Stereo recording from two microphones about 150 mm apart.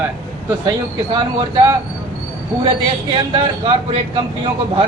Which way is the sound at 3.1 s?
35° right (ahead or behind).